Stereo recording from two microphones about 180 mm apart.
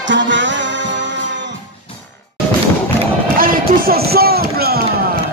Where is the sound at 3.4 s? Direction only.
55° right (ahead or behind).